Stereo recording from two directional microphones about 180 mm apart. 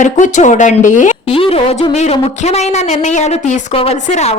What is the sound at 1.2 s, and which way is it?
A woman's voice, 30° left (ahead or behind).